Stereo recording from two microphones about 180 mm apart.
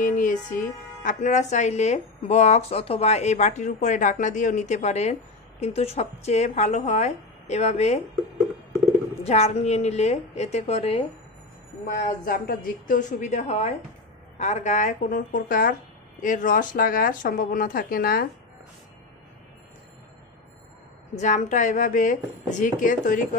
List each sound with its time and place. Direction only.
0.0 s speech: 45° left (ahead or behind)
9.2 s speech: 35° left (ahead or behind)
11.9 s speech: 50° left (ahead or behind)
21.1 s speech: 40° left (ahead or behind)